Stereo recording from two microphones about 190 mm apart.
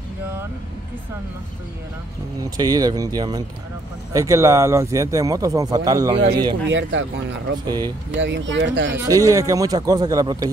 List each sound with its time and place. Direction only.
2.5 s speech: 20° right (ahead or behind)
6.7 s speech: 75° right (ahead or behind)
7.5 s speech: 20° right (ahead or behind)
8.2 s speech: 70° right (ahead or behind)
8.9 s speech: 15° right (ahead or behind)